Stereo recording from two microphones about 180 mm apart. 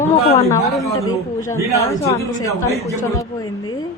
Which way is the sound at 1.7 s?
15° left (ahead or behind).